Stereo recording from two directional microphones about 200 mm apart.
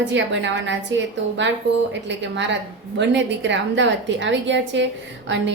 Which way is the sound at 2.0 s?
65° right (ahead or behind).